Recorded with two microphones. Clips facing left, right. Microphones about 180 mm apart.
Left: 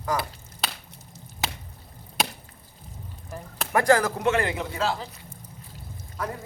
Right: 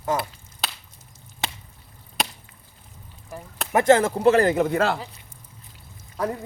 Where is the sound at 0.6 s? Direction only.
Centre (ahead or behind).